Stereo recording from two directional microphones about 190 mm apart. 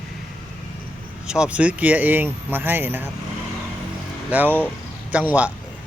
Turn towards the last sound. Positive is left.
turn(degrees=-10)  # may be behind; listen again after turning